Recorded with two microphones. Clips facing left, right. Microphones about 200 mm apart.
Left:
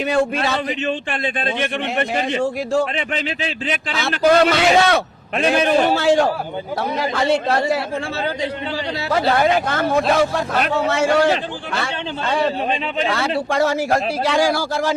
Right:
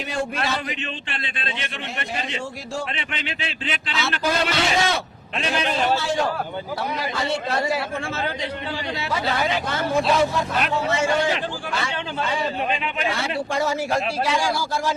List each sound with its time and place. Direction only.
0.1 s a man's voice: 50° left (ahead or behind)
2.9 s a man's voice: 40° left (ahead or behind); by 7.6 s 55° left (ahead or behind)
9.3 s a man's voice: 50° left (ahead or behind)
10.8 s a man's voice: 70° left (ahead or behind)
13.5 s a man's voice: 70° left (ahead or behind); by 14.9 s 90° left